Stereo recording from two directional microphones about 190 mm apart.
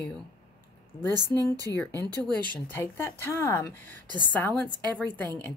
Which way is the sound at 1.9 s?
20° right (ahead or behind).